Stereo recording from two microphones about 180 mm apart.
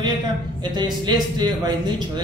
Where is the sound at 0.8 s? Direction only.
25° right (ahead or behind).